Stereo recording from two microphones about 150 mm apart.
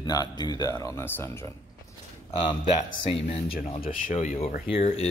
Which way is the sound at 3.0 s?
40° left (ahead or behind).